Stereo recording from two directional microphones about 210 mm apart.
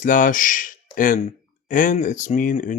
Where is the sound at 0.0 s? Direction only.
40° left (ahead or behind).